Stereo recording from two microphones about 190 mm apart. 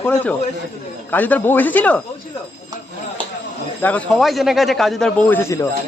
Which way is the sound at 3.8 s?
10° left (ahead or behind).